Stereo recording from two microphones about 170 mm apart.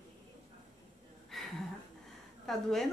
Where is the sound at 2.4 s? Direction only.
Centre (ahead or behind).